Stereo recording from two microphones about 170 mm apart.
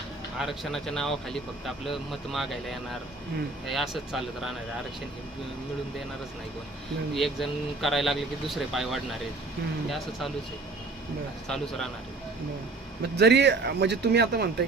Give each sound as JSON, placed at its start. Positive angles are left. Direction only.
{"t": 0.3, "sound": "speech", "side_deg": 0}
{"t": 7.2, "sound": "speech", "side_deg": 0}
{"t": 11.4, "sound": "speech", "side_deg": 5}
{"t": 13.0, "sound": "speech", "side_deg": -80}